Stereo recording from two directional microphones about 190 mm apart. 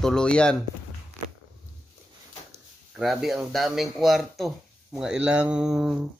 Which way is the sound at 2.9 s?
Centre (ahead or behind).